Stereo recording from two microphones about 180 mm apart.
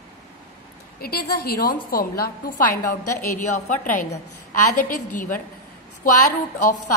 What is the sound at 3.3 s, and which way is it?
A woman's voice, 45° left (ahead or behind).